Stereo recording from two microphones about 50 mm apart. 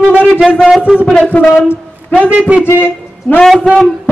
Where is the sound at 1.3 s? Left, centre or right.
Left.